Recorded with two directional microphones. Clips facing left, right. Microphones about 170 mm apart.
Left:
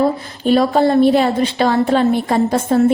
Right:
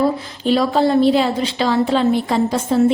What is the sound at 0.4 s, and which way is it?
A woman's voice, 50° left (ahead or behind).